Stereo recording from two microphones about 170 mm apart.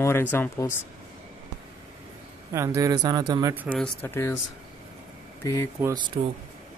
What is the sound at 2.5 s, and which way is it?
Speech, 15° right (ahead or behind).